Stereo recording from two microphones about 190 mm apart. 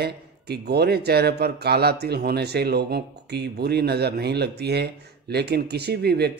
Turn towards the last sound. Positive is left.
turn(degrees=-60)  # may be behind; listen again after turning